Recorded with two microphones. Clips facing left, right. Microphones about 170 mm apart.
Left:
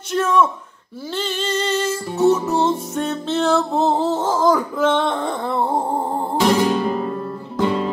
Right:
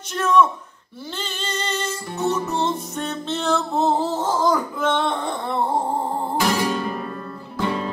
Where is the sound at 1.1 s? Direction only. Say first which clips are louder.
Left 7 dB; 5° left (ahead or behind).